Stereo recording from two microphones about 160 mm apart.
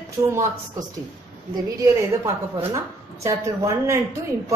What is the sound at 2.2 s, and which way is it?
A woman's voice, 20° right (ahead or behind).